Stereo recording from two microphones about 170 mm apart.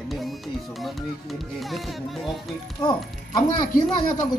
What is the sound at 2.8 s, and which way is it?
Speech, 25° left (ahead or behind).